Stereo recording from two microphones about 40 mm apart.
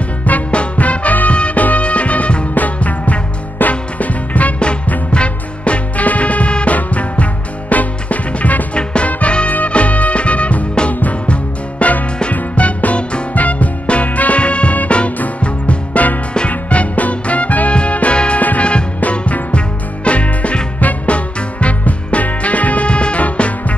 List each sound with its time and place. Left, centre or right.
0.2 s music: left